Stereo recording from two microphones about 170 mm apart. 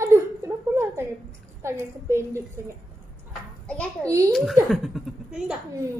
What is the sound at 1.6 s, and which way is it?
A woman's voice, 15° right (ahead or behind).